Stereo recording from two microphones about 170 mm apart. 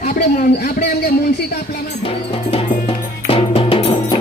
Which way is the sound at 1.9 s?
35° left (ahead or behind).